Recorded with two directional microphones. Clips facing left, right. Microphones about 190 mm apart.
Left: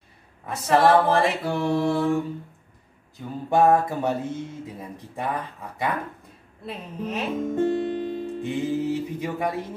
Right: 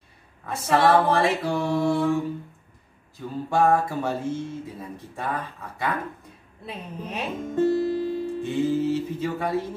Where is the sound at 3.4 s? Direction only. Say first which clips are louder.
Left 2 dB; 20° left (ahead or behind).